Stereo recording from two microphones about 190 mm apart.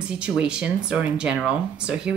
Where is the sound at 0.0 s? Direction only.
5° right (ahead or behind).